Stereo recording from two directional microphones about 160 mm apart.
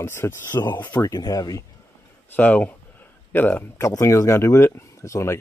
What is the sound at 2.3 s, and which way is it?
Speech, 10° left (ahead or behind).